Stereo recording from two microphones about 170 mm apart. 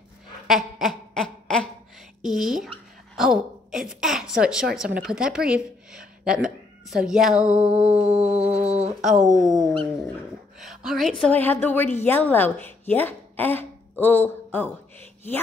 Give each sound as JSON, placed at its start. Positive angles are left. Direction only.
{"t": 0.5, "sound": "a sound", "side_deg": 0}
{"t": 2.2, "sound": "a woman's voice", "side_deg": 0}
{"t": 3.2, "sound": "a sound", "side_deg": 0}
{"t": 4.7, "sound": "a woman's voice", "side_deg": -5}
{"t": 8.1, "sound": "music", "side_deg": -40}
{"t": 9.0, "sound": "a woman's voice", "side_deg": -5}